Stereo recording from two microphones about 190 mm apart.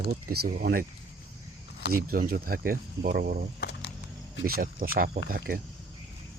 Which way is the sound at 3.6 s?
65° left (ahead or behind).